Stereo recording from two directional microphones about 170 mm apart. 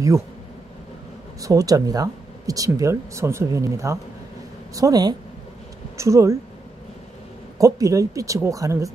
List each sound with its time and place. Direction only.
1.4 s speech: 20° right (ahead or behind)
7.5 s speech: 20° right (ahead or behind)